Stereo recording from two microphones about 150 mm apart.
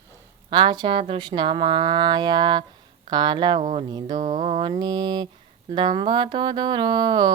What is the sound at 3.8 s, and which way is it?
Speech, 30° right (ahead or behind).